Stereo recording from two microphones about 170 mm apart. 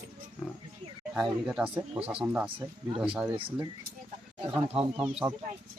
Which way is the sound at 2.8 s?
35° right (ahead or behind).